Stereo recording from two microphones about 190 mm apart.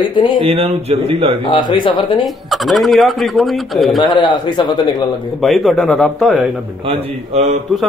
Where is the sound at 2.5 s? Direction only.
Centre (ahead or behind).